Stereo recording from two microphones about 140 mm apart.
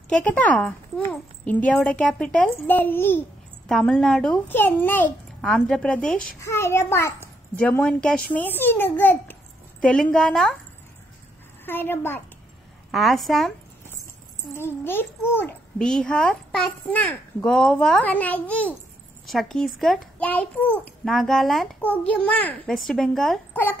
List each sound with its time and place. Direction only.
0.1 s a child's voice: 10° left (ahead or behind)
3.6 s a woman's voice: 5° left (ahead or behind)
4.5 s a child's voice: 15° left (ahead or behind)
11.6 s a child's voice: 15° left (ahead or behind)
12.9 s a woman's voice: centre (ahead or behind)
14.9 s a child's voice: 15° left (ahead or behind)
20.2 s a child's voice: 10° left (ahead or behind)
21.8 s a child's voice: 10° left (ahead or behind)
23.5 s a child's voice: 15° left (ahead or behind)